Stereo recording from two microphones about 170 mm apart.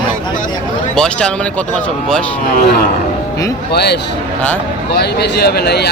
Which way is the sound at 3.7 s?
70° left (ahead or behind).